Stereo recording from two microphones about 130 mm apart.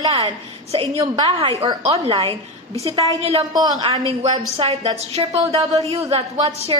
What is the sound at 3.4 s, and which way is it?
Speech, 30° right (ahead or behind).